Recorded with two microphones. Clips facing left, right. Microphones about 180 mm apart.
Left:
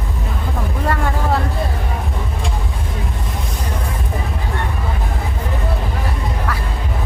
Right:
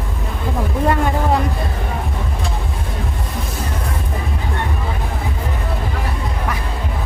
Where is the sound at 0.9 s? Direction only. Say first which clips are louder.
Right 2 dB; 20° right (ahead or behind).